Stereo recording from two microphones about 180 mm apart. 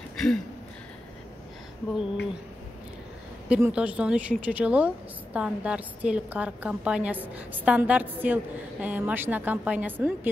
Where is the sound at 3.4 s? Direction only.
5° right (ahead or behind).